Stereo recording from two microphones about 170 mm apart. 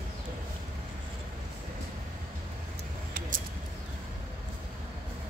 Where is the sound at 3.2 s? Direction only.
55° right (ahead or behind).